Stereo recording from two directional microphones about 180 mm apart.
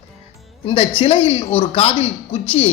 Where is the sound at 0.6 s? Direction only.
30° left (ahead or behind).